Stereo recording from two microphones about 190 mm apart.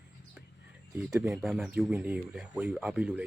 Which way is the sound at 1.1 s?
5° right (ahead or behind).